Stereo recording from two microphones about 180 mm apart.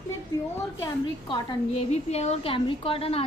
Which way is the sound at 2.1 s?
35° left (ahead or behind).